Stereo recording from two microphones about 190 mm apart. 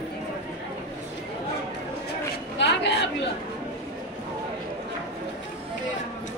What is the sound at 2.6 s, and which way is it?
Chatter, 65° left (ahead or behind).